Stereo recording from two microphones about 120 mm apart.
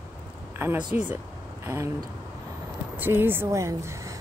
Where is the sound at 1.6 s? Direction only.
25° right (ahead or behind).